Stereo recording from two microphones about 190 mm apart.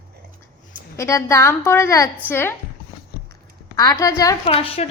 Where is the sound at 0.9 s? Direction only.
15° left (ahead or behind).